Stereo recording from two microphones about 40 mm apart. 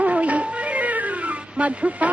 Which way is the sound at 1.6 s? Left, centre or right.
Right.